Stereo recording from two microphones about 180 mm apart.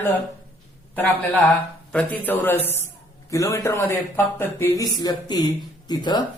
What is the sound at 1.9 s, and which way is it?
Speech, 10° left (ahead or behind).